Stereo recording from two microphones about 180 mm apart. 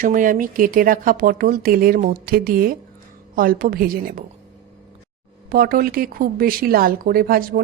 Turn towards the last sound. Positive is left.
turn(degrees=-55)  # may be behind; listen again after turning